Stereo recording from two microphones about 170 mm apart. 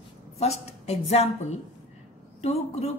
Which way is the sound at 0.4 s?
40° left (ahead or behind).